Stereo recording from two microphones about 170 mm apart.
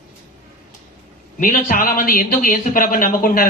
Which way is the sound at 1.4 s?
50° left (ahead or behind).